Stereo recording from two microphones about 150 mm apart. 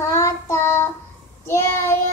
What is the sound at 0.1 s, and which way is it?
Child singing, 20° left (ahead or behind).